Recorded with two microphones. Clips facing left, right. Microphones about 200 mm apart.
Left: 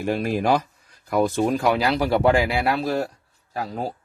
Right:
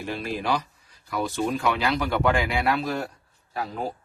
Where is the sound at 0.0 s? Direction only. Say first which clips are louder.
Left 7 dB; 45° left (ahead or behind).